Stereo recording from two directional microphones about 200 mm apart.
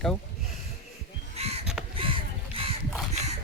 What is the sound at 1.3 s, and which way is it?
Crow, 30° right (ahead or behind).